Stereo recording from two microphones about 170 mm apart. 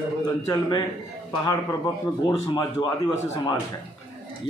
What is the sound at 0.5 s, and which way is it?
Speech, 20° left (ahead or behind).